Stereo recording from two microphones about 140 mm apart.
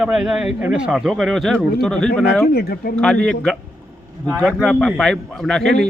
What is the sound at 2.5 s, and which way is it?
Speech, 90° left.